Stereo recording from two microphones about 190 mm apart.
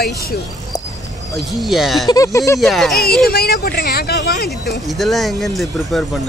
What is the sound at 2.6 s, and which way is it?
Speech, centre (ahead or behind).